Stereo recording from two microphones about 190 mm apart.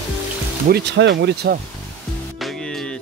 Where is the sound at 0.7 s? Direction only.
60° right (ahead or behind).